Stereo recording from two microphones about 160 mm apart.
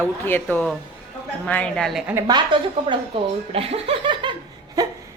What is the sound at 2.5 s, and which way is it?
Speech, 30° right (ahead or behind).